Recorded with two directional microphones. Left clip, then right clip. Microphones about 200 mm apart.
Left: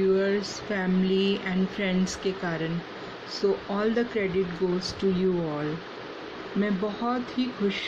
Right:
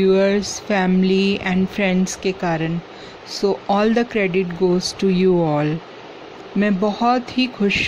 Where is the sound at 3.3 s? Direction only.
45° right (ahead or behind).